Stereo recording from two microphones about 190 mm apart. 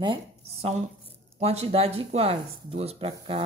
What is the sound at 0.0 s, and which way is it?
Speech, 30° right (ahead or behind).